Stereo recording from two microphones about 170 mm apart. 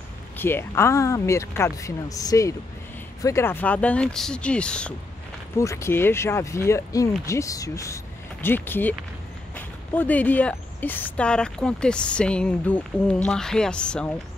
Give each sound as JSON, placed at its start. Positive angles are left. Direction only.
{"t": 0.4, "sound": "speech", "side_deg": 15}
{"t": 5.6, "sound": "speech", "side_deg": 15}
{"t": 9.9, "sound": "speech", "side_deg": 10}